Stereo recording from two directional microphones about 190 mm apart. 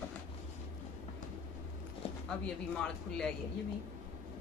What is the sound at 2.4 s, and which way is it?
Speech, 5° left (ahead or behind).